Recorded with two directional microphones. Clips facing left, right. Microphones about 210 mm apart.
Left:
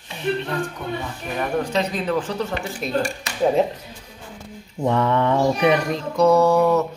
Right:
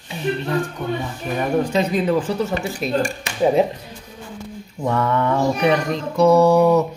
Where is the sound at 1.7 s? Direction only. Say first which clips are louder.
Right 4 dB; 10° right (ahead or behind).